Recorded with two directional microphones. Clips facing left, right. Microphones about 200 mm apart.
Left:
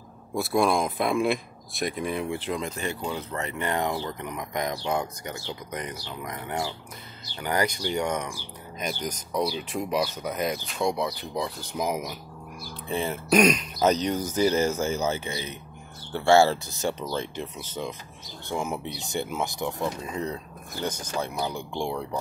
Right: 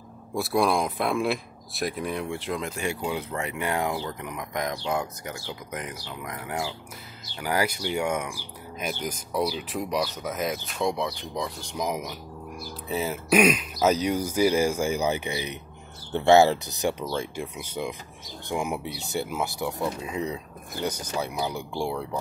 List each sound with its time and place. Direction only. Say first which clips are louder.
0.3 s speech: even; centre (ahead or behind)